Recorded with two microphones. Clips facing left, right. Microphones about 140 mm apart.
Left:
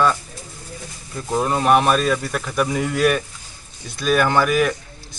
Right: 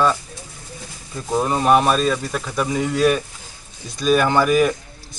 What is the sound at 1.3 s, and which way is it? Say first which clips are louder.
Speech: right 1 dB; 5° right (ahead or behind).